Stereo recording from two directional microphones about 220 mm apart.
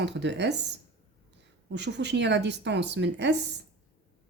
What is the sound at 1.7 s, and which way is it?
A woman's voice, 50° right (ahead or behind).